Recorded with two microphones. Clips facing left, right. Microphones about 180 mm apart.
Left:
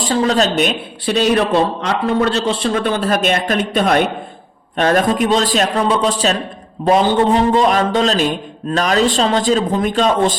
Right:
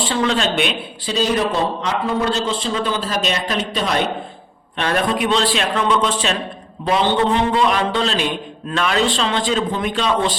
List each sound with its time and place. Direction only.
0.0 s a man's voice: 40° left (ahead or behind)
1.0 s a man's voice: 65° left (ahead or behind); by 10.3 s 45° left (ahead or behind)